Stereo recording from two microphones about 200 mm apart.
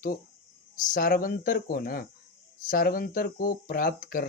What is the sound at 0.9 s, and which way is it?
Speech, 45° left (ahead or behind).